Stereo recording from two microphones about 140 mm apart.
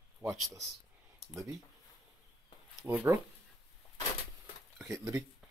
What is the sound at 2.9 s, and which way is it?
Speech, 15° right (ahead or behind).